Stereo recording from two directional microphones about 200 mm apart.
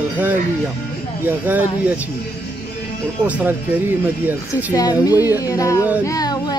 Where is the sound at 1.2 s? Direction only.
10° right (ahead or behind).